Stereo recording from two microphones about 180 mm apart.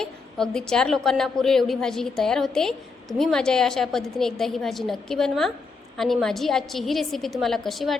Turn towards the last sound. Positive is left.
turn(degrees=0)  # may be behind; listen again after turning